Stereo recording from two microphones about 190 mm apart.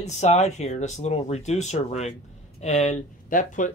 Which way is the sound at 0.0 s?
35° left (ahead or behind).